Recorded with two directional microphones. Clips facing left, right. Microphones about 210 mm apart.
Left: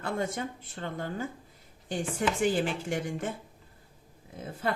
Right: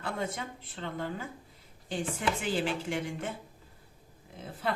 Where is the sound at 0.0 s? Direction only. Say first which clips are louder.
Left 3 dB; 50° left (ahead or behind).